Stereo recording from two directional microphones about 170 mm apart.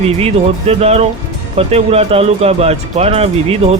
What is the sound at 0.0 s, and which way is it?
Speech, 35° right (ahead or behind).